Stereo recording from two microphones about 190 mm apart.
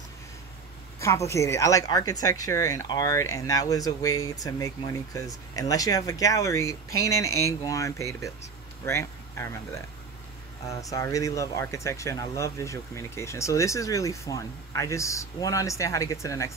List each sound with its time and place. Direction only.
0.9 s speech: 15° left (ahead or behind)
10.7 s speech: 15° left (ahead or behind)